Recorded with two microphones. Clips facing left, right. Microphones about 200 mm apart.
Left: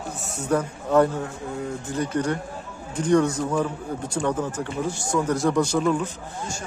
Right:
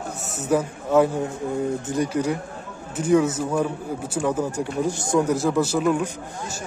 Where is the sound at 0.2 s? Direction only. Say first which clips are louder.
Right 2 dB; 5° right (ahead or behind).